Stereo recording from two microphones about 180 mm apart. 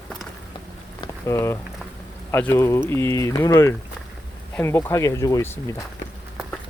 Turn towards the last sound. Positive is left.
turn(degrees=15)  # may be behind; listen again after turning